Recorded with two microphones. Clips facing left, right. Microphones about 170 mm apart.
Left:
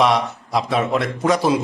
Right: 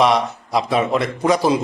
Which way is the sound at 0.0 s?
Centre (ahead or behind).